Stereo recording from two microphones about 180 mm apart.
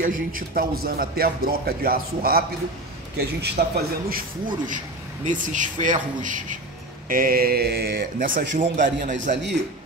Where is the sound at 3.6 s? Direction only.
55° right (ahead or behind).